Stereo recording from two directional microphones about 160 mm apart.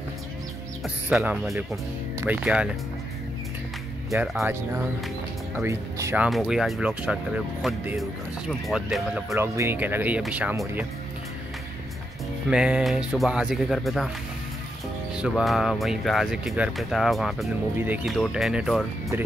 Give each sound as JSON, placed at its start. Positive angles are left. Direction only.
{"t": 0.8, "sound": "speech", "side_deg": -10}
{"t": 4.1, "sound": "speech", "side_deg": 0}
{"t": 5.6, "sound": "speech", "side_deg": -15}
{"t": 6.2, "sound": "speech", "side_deg": 0}
{"t": 9.3, "sound": "speech", "side_deg": -15}
{"t": 12.4, "sound": "speech", "side_deg": -5}
{"t": 15.1, "sound": "speech", "side_deg": -5}
{"t": 17.7, "sound": "speech", "side_deg": -10}
{"t": 18.0, "sound": "speech", "side_deg": 0}